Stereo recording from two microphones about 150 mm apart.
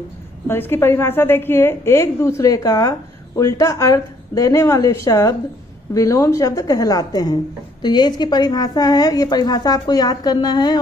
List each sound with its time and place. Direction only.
0.5 s a woman's voice: 15° left (ahead or behind)